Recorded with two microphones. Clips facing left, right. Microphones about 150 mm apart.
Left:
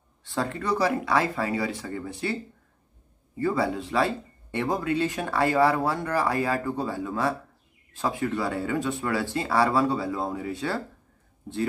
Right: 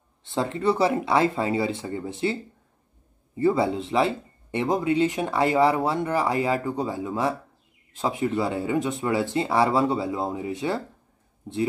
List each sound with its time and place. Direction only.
0.2 s speech: 20° right (ahead or behind)
3.3 s speech: 20° right (ahead or behind)